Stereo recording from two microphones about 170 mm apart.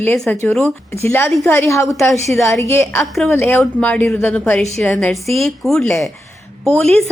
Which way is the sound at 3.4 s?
5° left (ahead or behind).